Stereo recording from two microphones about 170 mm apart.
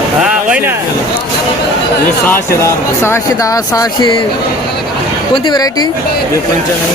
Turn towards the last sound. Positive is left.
turn(degrees=25)  # may be behind; listen again after turning